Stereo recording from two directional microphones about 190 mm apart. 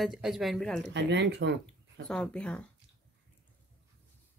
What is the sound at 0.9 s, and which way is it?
Speech, 70° right (ahead or behind).